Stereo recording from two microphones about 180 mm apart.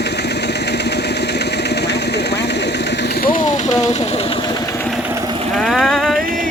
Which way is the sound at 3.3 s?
40° left (ahead or behind).